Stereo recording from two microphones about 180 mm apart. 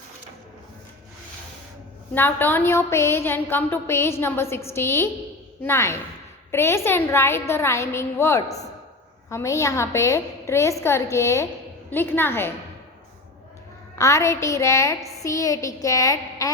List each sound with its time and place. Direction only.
2.1 s a woman's voice: 10° left (ahead or behind)
13.9 s a woman's voice: 15° left (ahead or behind)